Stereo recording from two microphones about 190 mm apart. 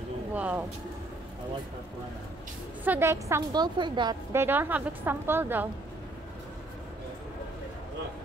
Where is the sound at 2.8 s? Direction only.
15° right (ahead or behind).